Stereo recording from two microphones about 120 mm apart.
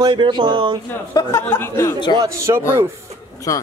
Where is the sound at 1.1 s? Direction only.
25° left (ahead or behind).